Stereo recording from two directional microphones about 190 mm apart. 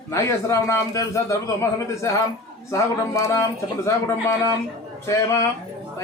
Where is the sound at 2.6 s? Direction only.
15° left (ahead or behind).